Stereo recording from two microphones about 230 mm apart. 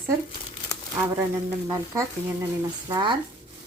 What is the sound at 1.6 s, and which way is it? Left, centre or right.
A woman's voice, centre.